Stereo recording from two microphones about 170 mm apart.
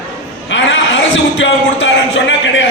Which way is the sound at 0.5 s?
90° left.